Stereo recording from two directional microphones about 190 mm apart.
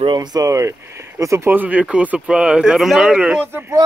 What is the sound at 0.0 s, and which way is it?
Speech, 25° right (ahead or behind).